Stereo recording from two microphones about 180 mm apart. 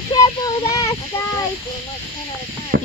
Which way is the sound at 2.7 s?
90° right.